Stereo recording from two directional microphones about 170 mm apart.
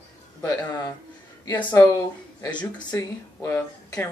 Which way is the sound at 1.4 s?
15° left (ahead or behind).